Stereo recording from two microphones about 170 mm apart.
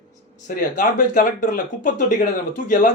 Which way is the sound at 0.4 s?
50° left (ahead or behind).